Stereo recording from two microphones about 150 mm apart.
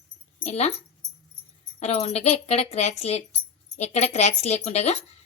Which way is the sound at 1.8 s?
45° left (ahead or behind).